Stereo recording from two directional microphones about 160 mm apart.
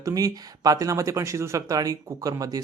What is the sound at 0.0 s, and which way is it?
Speech, 20° right (ahead or behind).